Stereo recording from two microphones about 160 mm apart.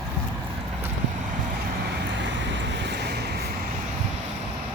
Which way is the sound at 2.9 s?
90° right.